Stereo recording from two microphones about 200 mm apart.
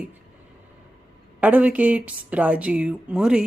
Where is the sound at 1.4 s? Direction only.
5° right (ahead or behind).